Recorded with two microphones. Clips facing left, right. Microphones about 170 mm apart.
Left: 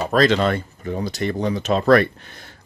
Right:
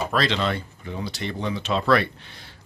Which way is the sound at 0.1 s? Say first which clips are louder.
Left 10 dB; 45° left (ahead or behind).